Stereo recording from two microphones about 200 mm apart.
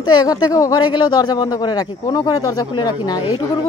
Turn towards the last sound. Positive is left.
turn(degrees=20)  # may be behind; listen again after turning